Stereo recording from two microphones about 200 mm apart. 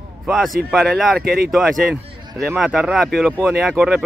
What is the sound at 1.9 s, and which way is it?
Speech, 15° right (ahead or behind).